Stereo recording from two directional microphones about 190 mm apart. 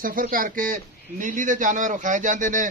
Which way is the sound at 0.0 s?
45° right (ahead or behind).